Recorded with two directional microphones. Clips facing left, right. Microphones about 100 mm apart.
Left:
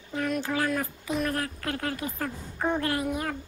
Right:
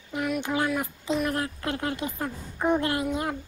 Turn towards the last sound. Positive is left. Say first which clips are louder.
# right 1 dB
turn(degrees=-20)  # may be behind; listen again after turning